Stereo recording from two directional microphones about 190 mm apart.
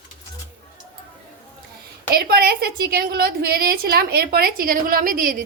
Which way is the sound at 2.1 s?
55° right (ahead or behind).